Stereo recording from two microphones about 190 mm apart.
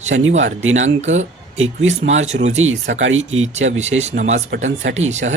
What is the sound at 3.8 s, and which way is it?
Speech, 35° right (ahead or behind).